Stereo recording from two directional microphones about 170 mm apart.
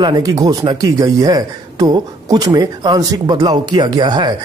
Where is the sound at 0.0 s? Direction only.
20° right (ahead or behind).